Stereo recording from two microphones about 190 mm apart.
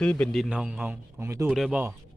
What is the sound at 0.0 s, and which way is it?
A man's voice, 5° left (ahead or behind).